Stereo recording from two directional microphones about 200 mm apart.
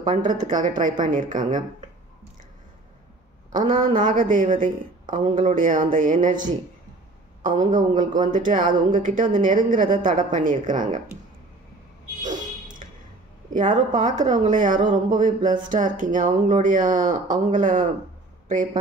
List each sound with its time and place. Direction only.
0.1 s speech: 40° right (ahead or behind)
3.5 s speech: 40° right (ahead or behind)
12.2 s a sound: 40° right (ahead or behind)
13.5 s speech: 40° right (ahead or behind)